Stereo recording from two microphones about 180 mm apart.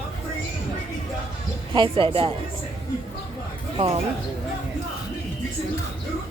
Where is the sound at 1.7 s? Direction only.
30° right (ahead or behind).